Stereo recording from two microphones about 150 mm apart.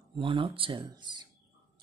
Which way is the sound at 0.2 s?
35° right (ahead or behind).